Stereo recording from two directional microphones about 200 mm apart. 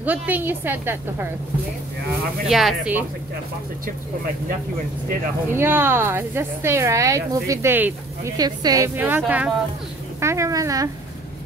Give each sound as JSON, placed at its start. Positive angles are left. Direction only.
{"t": 0.0, "sound": "speech", "side_deg": -10}
{"t": 2.4, "sound": "speech", "side_deg": 0}
{"t": 5.5, "sound": "speech", "side_deg": -10}